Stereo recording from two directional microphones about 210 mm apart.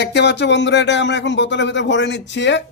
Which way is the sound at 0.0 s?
55° left (ahead or behind).